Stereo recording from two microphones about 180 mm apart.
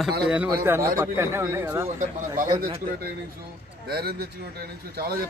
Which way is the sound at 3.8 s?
60° right (ahead or behind).